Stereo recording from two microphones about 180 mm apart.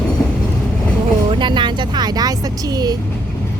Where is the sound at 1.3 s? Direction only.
25° right (ahead or behind).